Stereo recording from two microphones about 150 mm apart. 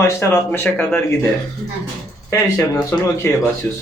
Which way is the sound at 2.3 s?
15° left (ahead or behind).